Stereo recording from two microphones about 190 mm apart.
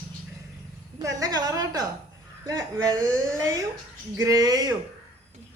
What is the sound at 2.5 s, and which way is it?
Speech, 20° right (ahead or behind).